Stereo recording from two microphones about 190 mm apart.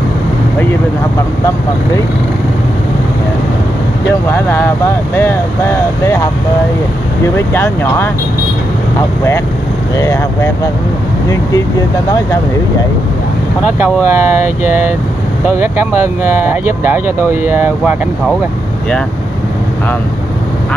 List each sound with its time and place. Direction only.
4.3 s speech: 10° left (ahead or behind)
7.3 s speech: 10° left (ahead or behind)
9.9 s speech: 15° left (ahead or behind)
14.0 s speech: 10° right (ahead or behind)